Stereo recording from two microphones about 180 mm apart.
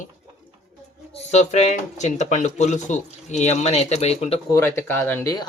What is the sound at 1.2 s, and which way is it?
Speech, 40° left (ahead or behind).